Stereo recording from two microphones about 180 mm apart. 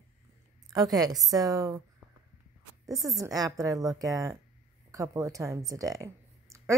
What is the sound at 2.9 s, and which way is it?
A woman's voice, 20° right (ahead or behind).